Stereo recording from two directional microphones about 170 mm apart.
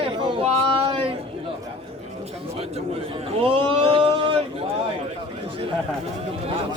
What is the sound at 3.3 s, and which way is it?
A man's voice, 35° right (ahead or behind).